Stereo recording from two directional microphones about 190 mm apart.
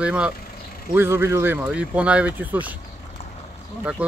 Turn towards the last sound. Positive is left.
turn(degrees=-10)  # may be behind; listen again after turning